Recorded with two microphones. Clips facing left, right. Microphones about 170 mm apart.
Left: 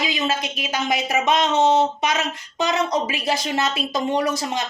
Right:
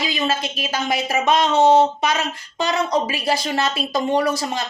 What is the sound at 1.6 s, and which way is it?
Speech, 35° right (ahead or behind).